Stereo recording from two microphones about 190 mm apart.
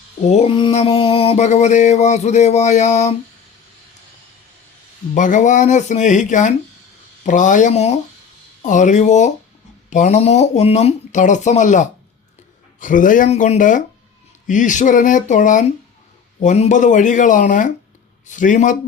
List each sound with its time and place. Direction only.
0.2 s mantra: 35° left (ahead or behind)
5.1 s mantra: 40° left (ahead or behind)
12.8 s speech: 45° left (ahead or behind)
14.4 s mantra: 40° left (ahead or behind)